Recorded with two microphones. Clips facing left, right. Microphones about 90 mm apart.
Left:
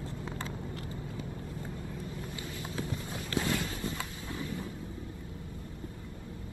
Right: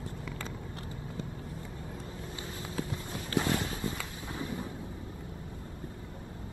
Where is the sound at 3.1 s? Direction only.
25° right (ahead or behind).